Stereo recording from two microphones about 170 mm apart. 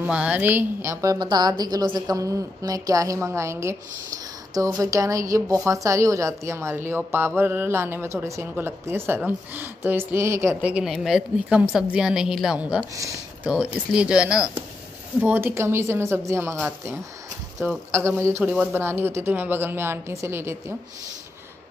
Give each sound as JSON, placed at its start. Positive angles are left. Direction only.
{"t": 0.0, "sound": "a woman's voice", "side_deg": -5}
{"t": 12.9, "sound": "speech", "side_deg": -20}
{"t": 13.5, "sound": "a woman's voice", "side_deg": -5}